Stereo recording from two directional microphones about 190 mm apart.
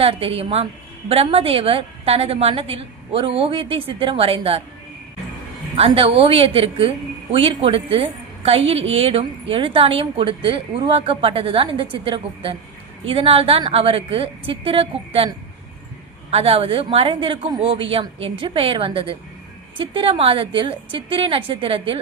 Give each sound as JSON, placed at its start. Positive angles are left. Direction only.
{"t": 0.0, "sound": "a woman's voice", "side_deg": -30}
{"t": 5.7, "sound": "a woman's voice", "side_deg": -30}
{"t": 16.3, "sound": "a woman's voice", "side_deg": -30}